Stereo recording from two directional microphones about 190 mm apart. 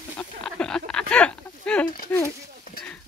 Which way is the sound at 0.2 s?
5° left (ahead or behind).